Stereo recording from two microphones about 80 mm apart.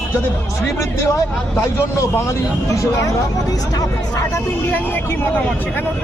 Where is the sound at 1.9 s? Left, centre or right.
Left.